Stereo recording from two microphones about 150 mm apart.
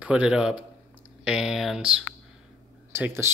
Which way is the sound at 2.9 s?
15° right (ahead or behind).